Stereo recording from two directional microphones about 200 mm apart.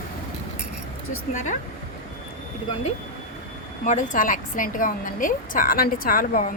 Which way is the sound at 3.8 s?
40° left (ahead or behind).